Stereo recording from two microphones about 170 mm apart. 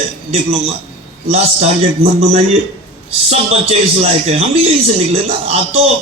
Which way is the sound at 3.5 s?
35° right (ahead or behind).